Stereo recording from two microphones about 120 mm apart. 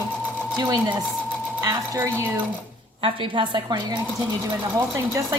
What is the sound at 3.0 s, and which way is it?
Speech, 40° right (ahead or behind).